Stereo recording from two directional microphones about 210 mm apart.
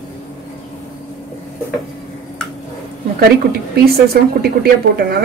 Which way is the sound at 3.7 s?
50° right (ahead or behind).